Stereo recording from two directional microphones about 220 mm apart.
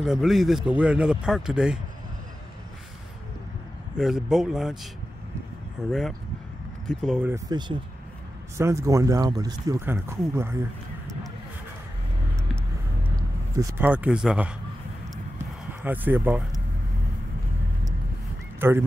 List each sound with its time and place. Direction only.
0.0 s speech: centre (ahead or behind)
4.0 s speech: centre (ahead or behind)
5.9 s speech: centre (ahead or behind)
7.3 s speech: 20° right (ahead or behind)
13.1 s a sound: 15° right (ahead or behind)
15.8 s speech: 10° right (ahead or behind)
18.6 s speech: 10° right (ahead or behind)